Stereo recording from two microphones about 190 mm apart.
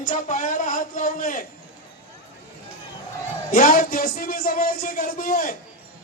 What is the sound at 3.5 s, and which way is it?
Speech, 45° left (ahead or behind).